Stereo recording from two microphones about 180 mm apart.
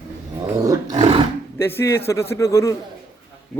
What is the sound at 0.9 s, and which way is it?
Roar, 35° right (ahead or behind).